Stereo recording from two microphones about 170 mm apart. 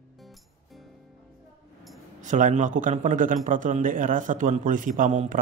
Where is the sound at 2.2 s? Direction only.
50° right (ahead or behind).